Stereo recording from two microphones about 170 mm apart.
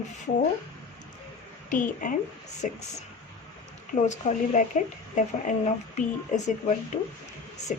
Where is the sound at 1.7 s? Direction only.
50° left (ahead or behind).